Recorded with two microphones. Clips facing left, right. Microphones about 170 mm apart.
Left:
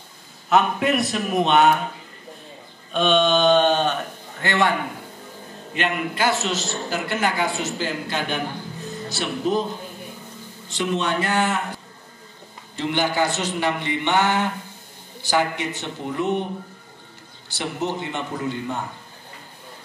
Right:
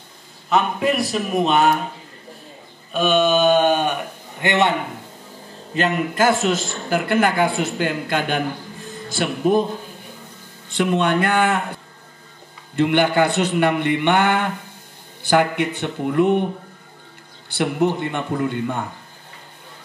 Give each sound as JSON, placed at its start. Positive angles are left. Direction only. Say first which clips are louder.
{"t": 0.5, "sound": "a man's voice", "louder": "even", "side_deg": 0}
{"t": 2.9, "sound": "speech", "louder": "right 1 dB", "side_deg": -5}
{"t": 5.8, "sound": "a man's voice", "louder": "right 5 dB", "side_deg": -45}
{"t": 10.7, "sound": "a man's voice", "louder": "right 5 dB", "side_deg": -55}
{"t": 17.5, "sound": "a man's voice", "louder": "right 7 dB", "side_deg": -55}